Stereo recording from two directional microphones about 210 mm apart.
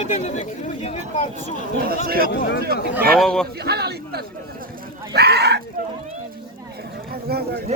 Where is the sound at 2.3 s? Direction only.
55° left (ahead or behind).